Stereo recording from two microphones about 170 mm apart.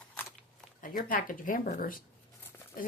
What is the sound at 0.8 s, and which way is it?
Speech, 55° left (ahead or behind).